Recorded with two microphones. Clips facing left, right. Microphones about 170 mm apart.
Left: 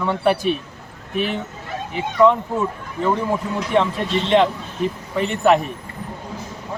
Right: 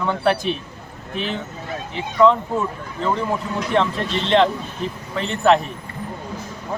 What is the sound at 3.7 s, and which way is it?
Speech, 10° left (ahead or behind).